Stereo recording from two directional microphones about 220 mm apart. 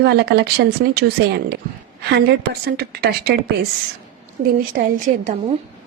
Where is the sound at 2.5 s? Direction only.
45° right (ahead or behind).